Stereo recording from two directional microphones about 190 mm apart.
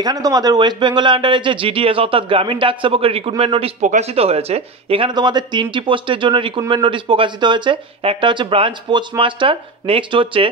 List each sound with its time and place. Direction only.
0.0 s speech: 20° right (ahead or behind)